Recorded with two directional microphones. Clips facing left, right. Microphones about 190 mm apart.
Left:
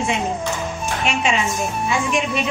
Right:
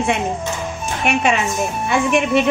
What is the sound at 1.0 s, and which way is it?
A woman's voice, 55° right (ahead or behind).